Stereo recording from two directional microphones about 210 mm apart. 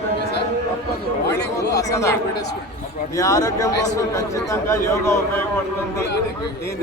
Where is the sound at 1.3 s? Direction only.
15° left (ahead or behind).